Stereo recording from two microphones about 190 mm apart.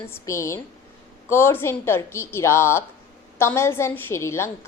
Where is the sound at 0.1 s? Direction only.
15° left (ahead or behind).